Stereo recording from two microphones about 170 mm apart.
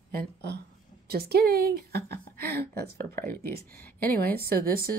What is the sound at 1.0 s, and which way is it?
Speech, 65° right (ahead or behind).